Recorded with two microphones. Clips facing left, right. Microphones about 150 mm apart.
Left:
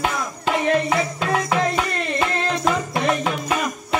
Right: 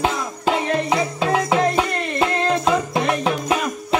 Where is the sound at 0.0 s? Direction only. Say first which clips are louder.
Right 2 dB; 20° right (ahead or behind).